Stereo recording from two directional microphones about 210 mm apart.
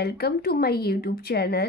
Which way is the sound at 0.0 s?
45° left (ahead or behind).